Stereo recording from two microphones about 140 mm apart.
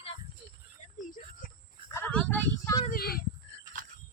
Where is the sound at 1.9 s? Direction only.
10° left (ahead or behind).